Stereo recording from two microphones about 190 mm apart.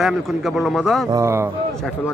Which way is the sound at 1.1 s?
15° right (ahead or behind).